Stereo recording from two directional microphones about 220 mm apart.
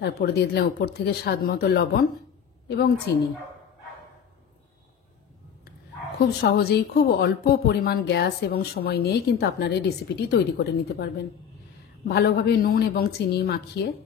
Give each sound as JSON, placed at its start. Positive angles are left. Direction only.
{"t": 0.0, "sound": "speech", "side_deg": 45}
{"t": 6.2, "sound": "speech", "side_deg": 45}